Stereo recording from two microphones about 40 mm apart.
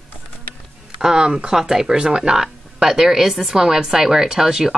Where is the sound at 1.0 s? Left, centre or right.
Centre.